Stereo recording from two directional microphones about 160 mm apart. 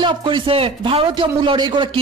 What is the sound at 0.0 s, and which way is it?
A man's voice, 30° right (ahead or behind).